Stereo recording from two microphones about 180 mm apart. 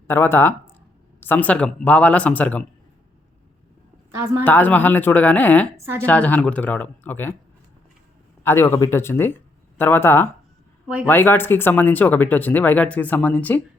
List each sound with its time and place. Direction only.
0.1 s speech: 10° left (ahead or behind)
4.1 s speech: 15° right (ahead or behind)
4.4 s speech: 10° left (ahead or behind)
5.7 s speech: 15° right (ahead or behind)
6.1 s speech: 10° left (ahead or behind)
8.4 s speech: 15° left (ahead or behind)